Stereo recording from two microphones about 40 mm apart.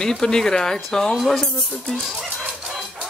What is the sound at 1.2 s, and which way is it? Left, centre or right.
Speech, centre.